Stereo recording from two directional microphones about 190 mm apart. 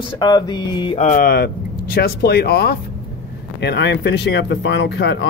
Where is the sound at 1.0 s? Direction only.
45° left (ahead or behind).